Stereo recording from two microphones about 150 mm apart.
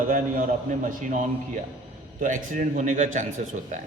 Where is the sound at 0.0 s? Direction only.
65° right (ahead or behind).